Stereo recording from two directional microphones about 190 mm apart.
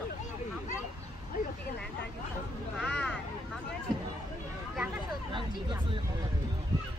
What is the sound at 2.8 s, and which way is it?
Vehicle, 5° left (ahead or behind).